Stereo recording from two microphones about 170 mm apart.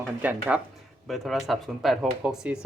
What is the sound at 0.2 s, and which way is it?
Speech, 10° right (ahead or behind).